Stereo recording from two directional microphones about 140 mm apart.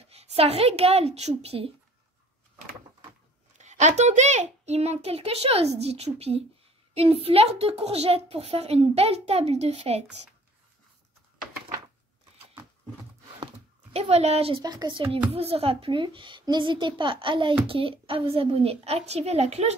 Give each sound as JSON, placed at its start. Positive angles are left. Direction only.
{"t": 0.0, "sound": "speech", "side_deg": -45}
{"t": 3.5, "sound": "a child's voice", "side_deg": -55}
{"t": 13.9, "sound": "a child's voice", "side_deg": -50}
{"t": 14.6, "sound": "a woman's voice", "side_deg": -30}